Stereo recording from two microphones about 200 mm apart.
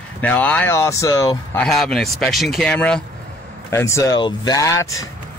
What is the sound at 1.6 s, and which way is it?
Speech, centre (ahead or behind).